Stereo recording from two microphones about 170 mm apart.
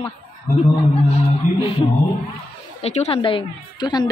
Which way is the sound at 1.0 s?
35° left (ahead or behind).